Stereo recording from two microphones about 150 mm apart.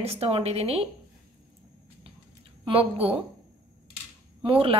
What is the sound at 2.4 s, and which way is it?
Speech, 40° right (ahead or behind).